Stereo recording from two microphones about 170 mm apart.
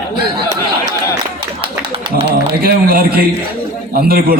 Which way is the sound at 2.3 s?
60° right (ahead or behind).